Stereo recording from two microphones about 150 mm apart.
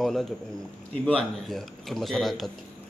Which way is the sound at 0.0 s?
Centre (ahead or behind).